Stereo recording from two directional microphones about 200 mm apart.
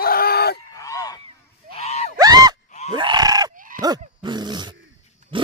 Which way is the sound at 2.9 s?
20° right (ahead or behind).